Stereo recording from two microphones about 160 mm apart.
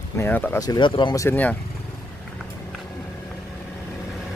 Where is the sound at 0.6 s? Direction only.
25° left (ahead or behind); by 1.6 s 10° left (ahead or behind).